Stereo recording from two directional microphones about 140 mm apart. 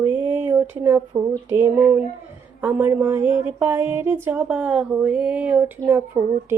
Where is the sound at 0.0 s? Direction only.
15° right (ahead or behind).